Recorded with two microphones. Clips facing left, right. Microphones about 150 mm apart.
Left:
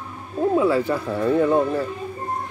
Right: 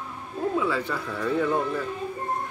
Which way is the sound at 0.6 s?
40° left (ahead or behind).